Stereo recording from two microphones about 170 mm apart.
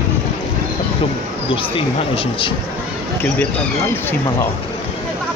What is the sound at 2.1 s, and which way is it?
Speech, 30° left (ahead or behind).